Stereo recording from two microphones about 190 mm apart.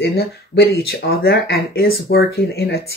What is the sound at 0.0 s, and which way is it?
Speech, 60° left (ahead or behind).